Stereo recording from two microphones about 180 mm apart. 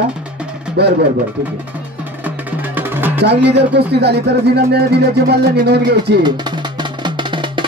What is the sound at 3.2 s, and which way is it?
Speech, 70° right (ahead or behind).